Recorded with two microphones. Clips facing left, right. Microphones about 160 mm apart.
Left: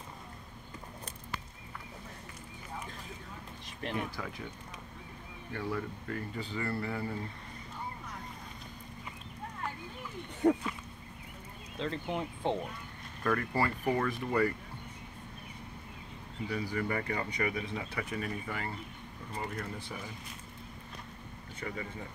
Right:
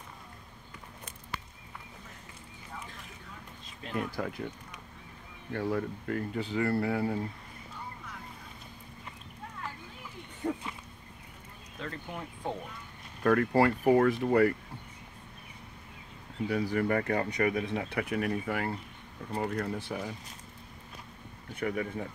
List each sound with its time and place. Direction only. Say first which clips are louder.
4.2 s speech: right 6 dB; 55° right (ahead or behind)
5.5 s speech: right 5 dB; 50° right (ahead or behind)
10.4 s a sound: left 7 dB; 75° left (ahead or behind)
11.8 s speech: left 5 dB; 25° left (ahead or behind)
13.2 s speech: right 7 dB; 55° right (ahead or behind)
16.4 s speech: right 6 dB; 55° right (ahead or behind)
21.5 s speech: right 8 dB; 65° right (ahead or behind)